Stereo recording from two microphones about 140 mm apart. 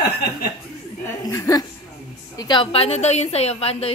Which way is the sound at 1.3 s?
25° left (ahead or behind).